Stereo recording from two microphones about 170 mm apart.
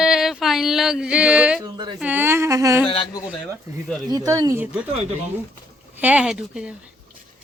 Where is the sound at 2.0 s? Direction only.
10° right (ahead or behind).